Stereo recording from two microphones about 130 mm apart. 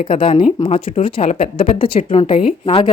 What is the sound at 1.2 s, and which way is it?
Speech, 60° left (ahead or behind).